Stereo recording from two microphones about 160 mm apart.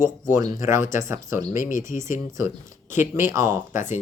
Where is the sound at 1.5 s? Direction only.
55° left (ahead or behind).